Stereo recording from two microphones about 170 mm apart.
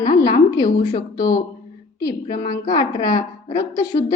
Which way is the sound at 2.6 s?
20° left (ahead or behind).